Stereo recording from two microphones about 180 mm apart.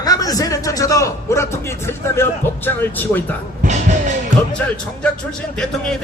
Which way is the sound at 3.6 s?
40° right (ahead or behind).